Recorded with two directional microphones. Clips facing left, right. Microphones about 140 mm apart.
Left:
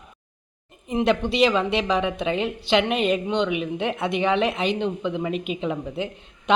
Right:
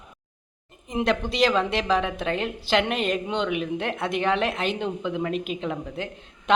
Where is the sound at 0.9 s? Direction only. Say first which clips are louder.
Left 3 dB; 5° right (ahead or behind).